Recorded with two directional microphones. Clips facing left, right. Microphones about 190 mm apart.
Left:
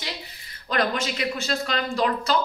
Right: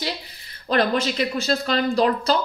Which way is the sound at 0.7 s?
35° right (ahead or behind).